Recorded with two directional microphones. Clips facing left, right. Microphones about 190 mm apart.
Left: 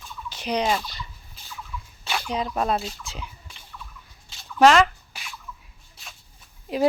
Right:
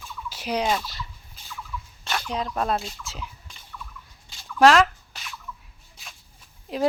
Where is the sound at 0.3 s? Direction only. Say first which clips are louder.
Left 1 dB; 5° right (ahead or behind).